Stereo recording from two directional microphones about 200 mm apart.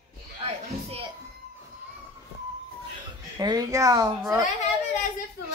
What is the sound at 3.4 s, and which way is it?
Speech, 20° right (ahead or behind).